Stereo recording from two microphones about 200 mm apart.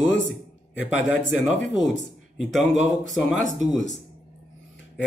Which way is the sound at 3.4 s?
35° right (ahead or behind).